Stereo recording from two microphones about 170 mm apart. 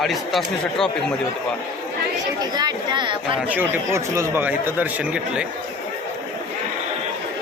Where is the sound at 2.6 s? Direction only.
25° right (ahead or behind).